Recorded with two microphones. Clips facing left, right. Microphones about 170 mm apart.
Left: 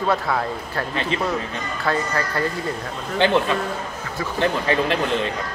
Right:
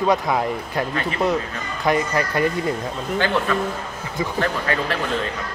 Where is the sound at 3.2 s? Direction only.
20° left (ahead or behind).